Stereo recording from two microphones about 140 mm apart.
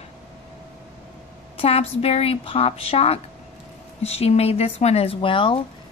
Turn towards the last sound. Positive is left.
turn(degrees=40)  # may be behind; listen again after turning